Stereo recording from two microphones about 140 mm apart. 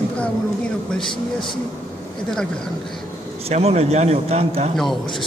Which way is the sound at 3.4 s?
50° right (ahead or behind).